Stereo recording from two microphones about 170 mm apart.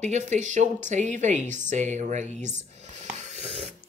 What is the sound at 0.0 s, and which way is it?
A woman's voice, 45° right (ahead or behind).